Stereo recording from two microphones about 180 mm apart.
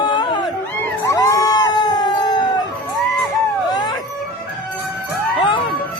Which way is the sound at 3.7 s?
20° left (ahead or behind).